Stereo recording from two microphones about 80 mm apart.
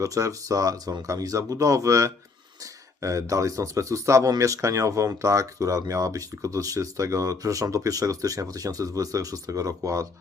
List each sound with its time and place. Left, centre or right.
0.0 s speech: right